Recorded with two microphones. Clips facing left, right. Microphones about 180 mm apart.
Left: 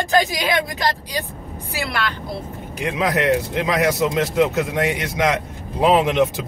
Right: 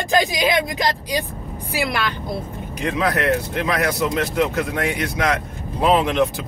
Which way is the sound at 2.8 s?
15° left (ahead or behind).